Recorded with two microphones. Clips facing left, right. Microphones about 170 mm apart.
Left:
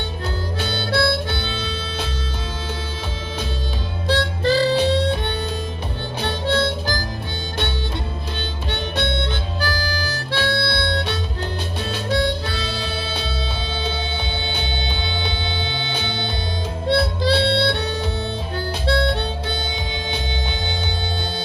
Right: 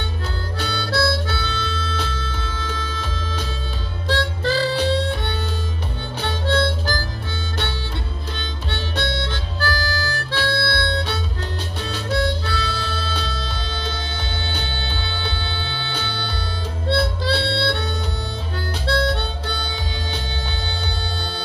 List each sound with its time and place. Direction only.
0.6 s harmonica: 20° left (ahead or behind)
2.2 s music: 15° left (ahead or behind)
4.1 s harmonica: 15° left (ahead or behind)
6.2 s harmonica: 15° left (ahead or behind)
8.7 s harmonica: 15° left (ahead or behind)
12.4 s music: 15° left (ahead or behind)
14.5 s music: 15° left (ahead or behind)
16.9 s harmonica: 20° left (ahead or behind)
18.9 s harmonica: 20° left (ahead or behind)